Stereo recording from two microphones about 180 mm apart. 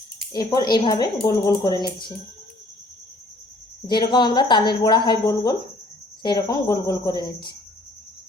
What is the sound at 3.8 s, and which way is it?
A woman's voice, 25° left (ahead or behind).